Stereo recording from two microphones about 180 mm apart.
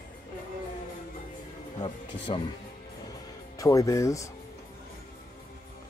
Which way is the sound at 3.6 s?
20° left (ahead or behind).